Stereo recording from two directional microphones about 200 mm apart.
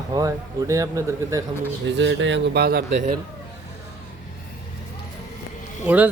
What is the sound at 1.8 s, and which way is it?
Speech, 65° right (ahead or behind).